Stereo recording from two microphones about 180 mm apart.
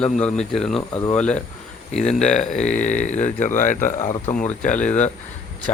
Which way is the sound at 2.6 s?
45° left (ahead or behind).